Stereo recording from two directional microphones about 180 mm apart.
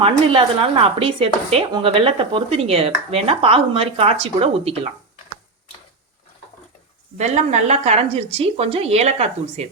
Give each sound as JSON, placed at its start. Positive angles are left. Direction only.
{"t": 0.0, "sound": "speech", "side_deg": -30}
{"t": 7.2, "sound": "speech", "side_deg": -40}